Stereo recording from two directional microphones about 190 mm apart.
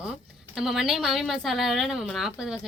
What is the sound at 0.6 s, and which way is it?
A woman's voice, centre (ahead or behind).